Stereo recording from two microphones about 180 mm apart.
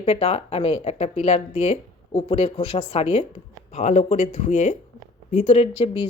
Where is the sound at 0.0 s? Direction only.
35° left (ahead or behind).